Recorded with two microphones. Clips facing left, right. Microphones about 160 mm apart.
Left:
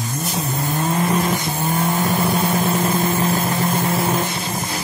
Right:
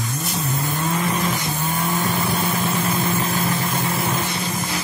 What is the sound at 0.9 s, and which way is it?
Vehicle, 45° left (ahead or behind).